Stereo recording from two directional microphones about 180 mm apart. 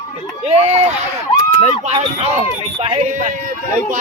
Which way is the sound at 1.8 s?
35° right (ahead or behind).